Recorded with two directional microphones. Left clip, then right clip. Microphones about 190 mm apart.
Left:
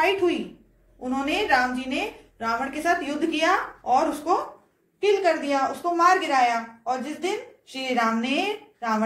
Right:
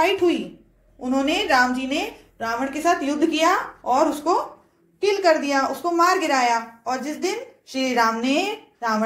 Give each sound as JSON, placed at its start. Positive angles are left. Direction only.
{"t": 1.0, "sound": "a woman's voice", "side_deg": -40}